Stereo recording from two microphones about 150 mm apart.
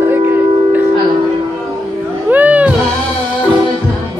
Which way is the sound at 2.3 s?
10° right (ahead or behind).